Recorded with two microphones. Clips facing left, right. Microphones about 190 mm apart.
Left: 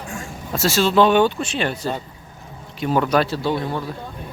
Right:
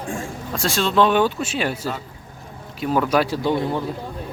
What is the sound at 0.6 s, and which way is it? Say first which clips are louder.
Speech: left 3 dB; 5° left (ahead or behind).